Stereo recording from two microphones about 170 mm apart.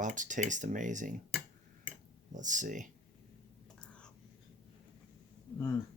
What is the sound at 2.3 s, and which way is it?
Speech, 45° right (ahead or behind).